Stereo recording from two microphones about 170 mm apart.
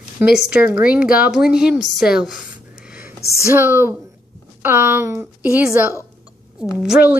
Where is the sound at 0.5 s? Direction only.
10° right (ahead or behind).